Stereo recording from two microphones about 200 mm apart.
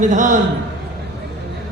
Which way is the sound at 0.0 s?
40° right (ahead or behind).